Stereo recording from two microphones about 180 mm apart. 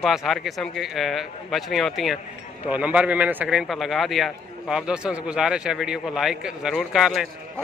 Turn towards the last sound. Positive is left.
turn(degrees=0)  # may be behind; listen again after turning